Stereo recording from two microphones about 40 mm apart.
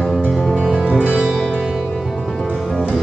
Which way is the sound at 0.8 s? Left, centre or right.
Right.